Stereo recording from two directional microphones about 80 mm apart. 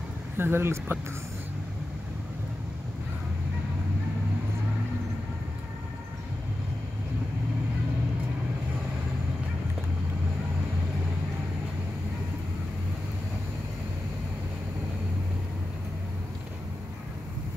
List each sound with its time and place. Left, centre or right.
0.4 s speech: right